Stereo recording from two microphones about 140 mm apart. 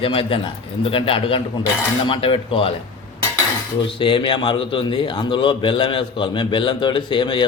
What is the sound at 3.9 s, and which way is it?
A man's voice, 35° left (ahead or behind).